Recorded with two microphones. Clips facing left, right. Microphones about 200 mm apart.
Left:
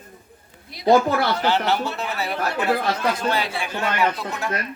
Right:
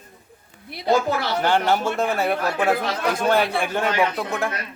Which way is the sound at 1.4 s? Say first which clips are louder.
Right 2 dB; 50° right (ahead or behind).